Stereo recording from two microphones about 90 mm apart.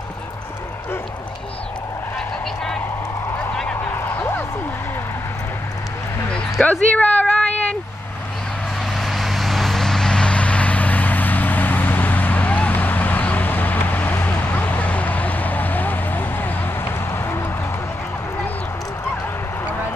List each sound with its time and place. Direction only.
3.9 s music: 25° left (ahead or behind)
6.6 s a sound: 15° left (ahead or behind)
8.9 s vehicle: centre (ahead or behind); by 17.5 s 25° left (ahead or behind)